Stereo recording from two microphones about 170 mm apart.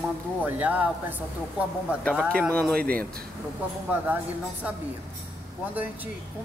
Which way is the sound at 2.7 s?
60° right (ahead or behind).